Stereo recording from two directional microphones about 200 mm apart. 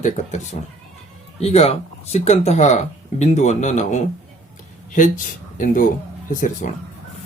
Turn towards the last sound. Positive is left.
turn(degrees=40)  # may be behind; listen again after turning